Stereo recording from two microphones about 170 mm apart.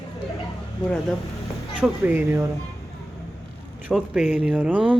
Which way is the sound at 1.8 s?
10° right (ahead or behind).